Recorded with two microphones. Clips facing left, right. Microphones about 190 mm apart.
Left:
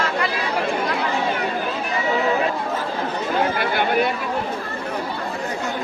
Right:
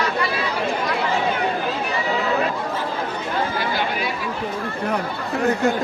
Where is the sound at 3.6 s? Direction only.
60° left (ahead or behind).